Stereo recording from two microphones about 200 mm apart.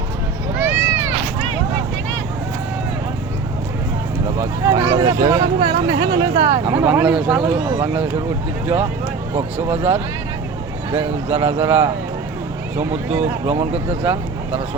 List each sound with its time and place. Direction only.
0.6 s a sound: 10° right (ahead or behind)
4.4 s speech: 15° right (ahead or behind)
6.7 s speech: 5° right (ahead or behind)
9.6 s speech: 30° right (ahead or behind)
12.7 s speech: 10° right (ahead or behind)
13.5 s speech: 30° right (ahead or behind)